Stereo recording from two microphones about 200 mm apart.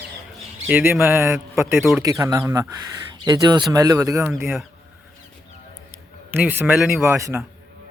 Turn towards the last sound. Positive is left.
turn(degrees=-15)  # may be behind; listen again after turning